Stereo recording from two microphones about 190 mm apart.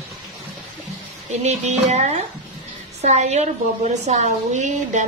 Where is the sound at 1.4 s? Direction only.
35° right (ahead or behind).